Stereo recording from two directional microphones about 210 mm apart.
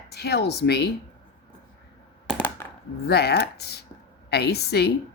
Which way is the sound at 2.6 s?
15° left (ahead or behind).